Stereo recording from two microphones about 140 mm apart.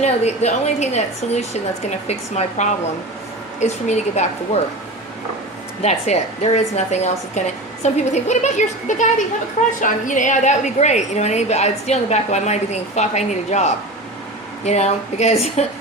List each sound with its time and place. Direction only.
0.0 s a woman's voice: 50° left (ahead or behind)
5.8 s a woman's voice: 50° left (ahead or behind)